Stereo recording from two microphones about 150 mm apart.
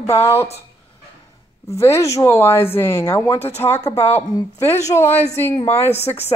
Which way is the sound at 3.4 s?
45° left (ahead or behind).